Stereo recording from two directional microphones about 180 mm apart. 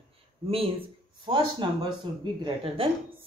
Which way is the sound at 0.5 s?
30° right (ahead or behind).